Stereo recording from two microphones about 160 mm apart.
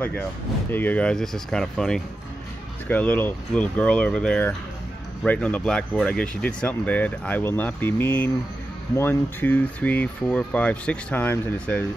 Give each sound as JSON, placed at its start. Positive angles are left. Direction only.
{"t": 0.7, "sound": "speech", "side_deg": 10}